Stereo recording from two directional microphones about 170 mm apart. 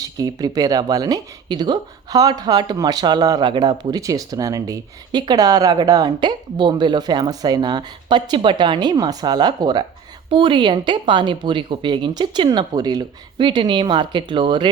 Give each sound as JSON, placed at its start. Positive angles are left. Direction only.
{"t": 0.0, "sound": "speech", "side_deg": -20}